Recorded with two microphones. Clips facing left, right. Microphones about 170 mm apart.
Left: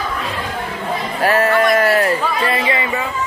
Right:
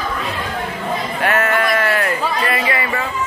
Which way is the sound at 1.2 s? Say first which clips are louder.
Left 4 dB; 35° left (ahead or behind).